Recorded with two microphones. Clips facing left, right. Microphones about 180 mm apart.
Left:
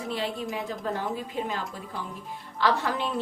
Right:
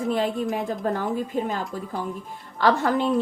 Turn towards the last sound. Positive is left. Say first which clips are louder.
# right 5 dB
turn(degrees=-45)  # may be behind; listen again after turning